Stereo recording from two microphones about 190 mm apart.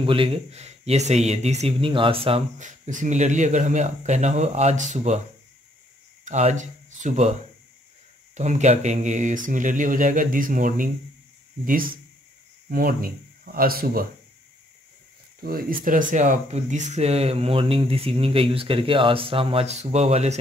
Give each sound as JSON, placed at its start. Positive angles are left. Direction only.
{"t": 0.0, "sound": "speech", "side_deg": -30}
{"t": 6.2, "sound": "speech", "side_deg": -40}
{"t": 8.4, "sound": "speech", "side_deg": -40}
{"t": 12.6, "sound": "speech", "side_deg": -50}
{"t": 15.4, "sound": "speech", "side_deg": -50}